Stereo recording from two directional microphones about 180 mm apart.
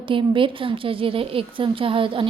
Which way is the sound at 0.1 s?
30° right (ahead or behind).